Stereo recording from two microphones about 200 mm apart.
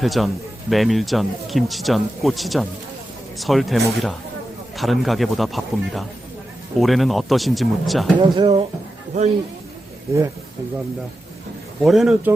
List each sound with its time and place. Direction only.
0.0 s speech: centre (ahead or behind)
8.2 s speech: 25° right (ahead or behind)
9.1 s a man's voice: 35° right (ahead or behind)
11.8 s speech: centre (ahead or behind)